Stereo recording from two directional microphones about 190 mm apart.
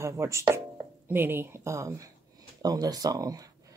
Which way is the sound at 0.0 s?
15° right (ahead or behind).